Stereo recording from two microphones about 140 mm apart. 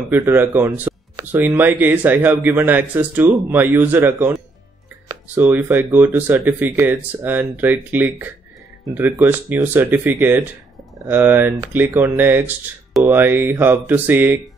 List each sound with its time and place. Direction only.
0.2 s speech: 20° right (ahead or behind)
0.9 s music: 20° right (ahead or behind)
1.3 s speech: 10° right (ahead or behind)
5.3 s speech: 15° right (ahead or behind)